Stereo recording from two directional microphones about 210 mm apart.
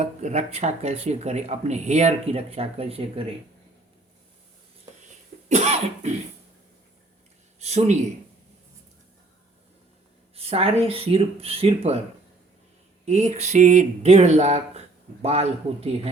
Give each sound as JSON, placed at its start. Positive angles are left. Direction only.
{"t": 0.0, "sound": "speech", "side_deg": -35}
{"t": 5.5, "sound": "cough", "side_deg": -30}
{"t": 7.6, "sound": "speech", "side_deg": -30}
{"t": 10.3, "sound": "speech", "side_deg": -30}
{"t": 13.1, "sound": "speech", "side_deg": -30}